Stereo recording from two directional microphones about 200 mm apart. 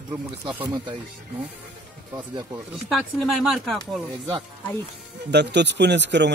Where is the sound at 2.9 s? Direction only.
Centre (ahead or behind).